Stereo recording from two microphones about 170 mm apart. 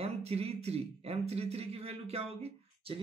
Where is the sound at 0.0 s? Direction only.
35° right (ahead or behind).